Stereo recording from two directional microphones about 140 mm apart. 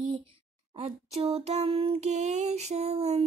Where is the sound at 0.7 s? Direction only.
50° right (ahead or behind).